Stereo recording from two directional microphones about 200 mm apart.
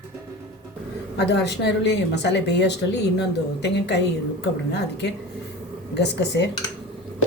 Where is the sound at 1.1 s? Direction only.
60° left (ahead or behind).